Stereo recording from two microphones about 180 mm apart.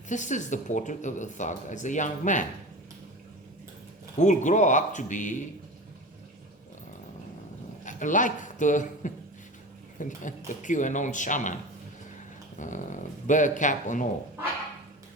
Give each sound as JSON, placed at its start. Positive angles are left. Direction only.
{"t": 0.1, "sound": "speech", "side_deg": 45}
{"t": 4.2, "sound": "speech", "side_deg": 45}
{"t": 7.9, "sound": "a man's voice", "side_deg": 45}